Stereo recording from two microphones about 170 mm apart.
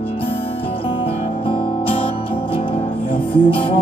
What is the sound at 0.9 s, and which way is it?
Music, 30° left (ahead or behind).